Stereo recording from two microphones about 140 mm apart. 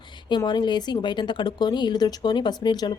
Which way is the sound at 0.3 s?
30° left (ahead or behind).